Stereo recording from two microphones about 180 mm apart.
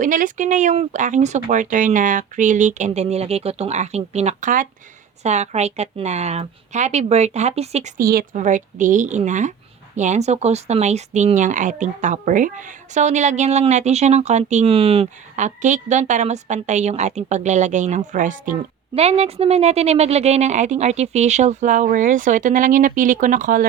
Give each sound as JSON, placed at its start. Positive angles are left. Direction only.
{"t": 0.0, "sound": "speech", "side_deg": -45}
{"t": 7.9, "sound": "speech", "side_deg": -55}
{"t": 18.9, "sound": "speech", "side_deg": -35}